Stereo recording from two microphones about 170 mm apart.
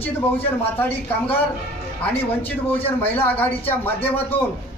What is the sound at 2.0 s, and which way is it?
Speech, 10° left (ahead or behind).